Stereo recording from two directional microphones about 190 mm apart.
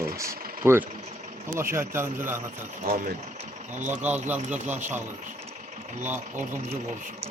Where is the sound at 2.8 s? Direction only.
50° right (ahead or behind).